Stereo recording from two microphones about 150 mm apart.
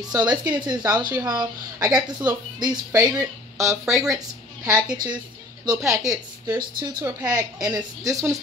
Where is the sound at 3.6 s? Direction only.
20° right (ahead or behind).